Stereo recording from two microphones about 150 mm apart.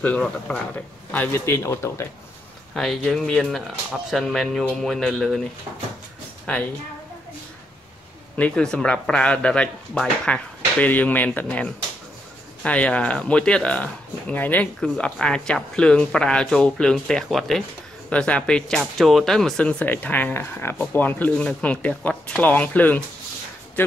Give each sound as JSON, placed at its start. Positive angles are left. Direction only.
{"t": 0.0, "sound": "speech", "side_deg": 10}
{"t": 2.7, "sound": "speech", "side_deg": 0}
{"t": 8.4, "sound": "speech", "side_deg": 5}